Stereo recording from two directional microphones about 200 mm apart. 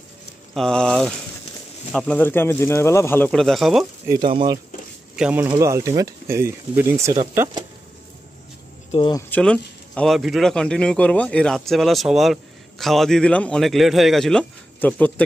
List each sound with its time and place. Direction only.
0.6 s speech: 5° left (ahead or behind)
4.1 s speech: 25° right (ahead or behind)
5.1 s speech: 5° right (ahead or behind)
8.9 s speech: 25° left (ahead or behind)
9.3 s speech: 5° left (ahead or behind)